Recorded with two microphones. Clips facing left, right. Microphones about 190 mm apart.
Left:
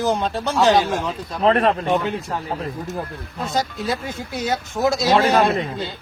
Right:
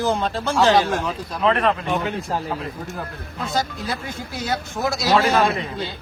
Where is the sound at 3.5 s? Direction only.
15° left (ahead or behind).